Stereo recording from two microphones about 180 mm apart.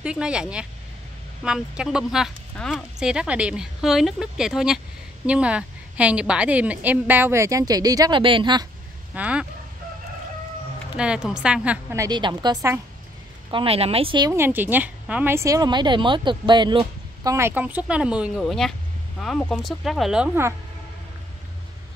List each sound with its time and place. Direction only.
0.0 s speech: 5° right (ahead or behind); by 8.6 s 25° right (ahead or behind)
9.1 s speech: 5° right (ahead or behind)
11.0 s speech: 5° right (ahead or behind)
13.5 s speech: 30° right (ahead or behind)
14.3 s speech: 10° right (ahead or behind)